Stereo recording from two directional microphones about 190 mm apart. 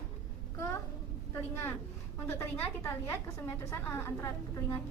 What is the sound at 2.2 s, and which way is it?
Speech, 10° left (ahead or behind).